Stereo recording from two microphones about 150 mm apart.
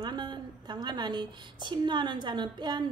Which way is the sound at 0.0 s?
30° right (ahead or behind).